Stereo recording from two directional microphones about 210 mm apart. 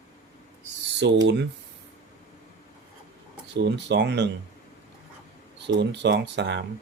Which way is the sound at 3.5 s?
55° right (ahead or behind).